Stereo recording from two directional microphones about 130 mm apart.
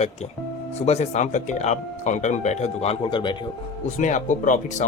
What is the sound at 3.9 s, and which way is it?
Speech, 75° left (ahead or behind).